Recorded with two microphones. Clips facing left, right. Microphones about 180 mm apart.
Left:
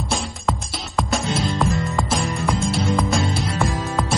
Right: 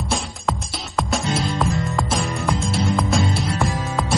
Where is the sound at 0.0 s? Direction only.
Centre (ahead or behind).